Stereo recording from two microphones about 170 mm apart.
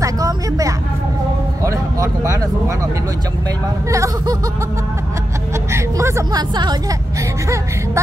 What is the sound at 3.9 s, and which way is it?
Laughter, 20° right (ahead or behind).